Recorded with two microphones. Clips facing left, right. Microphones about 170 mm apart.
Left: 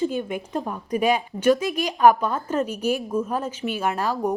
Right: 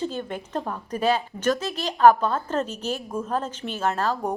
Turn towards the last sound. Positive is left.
turn(degrees=10)  # may be behind; listen again after turning